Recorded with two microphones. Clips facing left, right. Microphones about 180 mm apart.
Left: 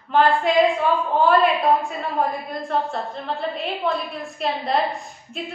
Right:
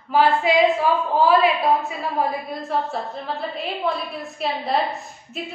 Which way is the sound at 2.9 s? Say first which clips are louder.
Even; centre (ahead or behind).